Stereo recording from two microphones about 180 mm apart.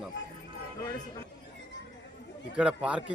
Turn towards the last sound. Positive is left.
turn(degrees=-5)  # may be behind; listen again after turning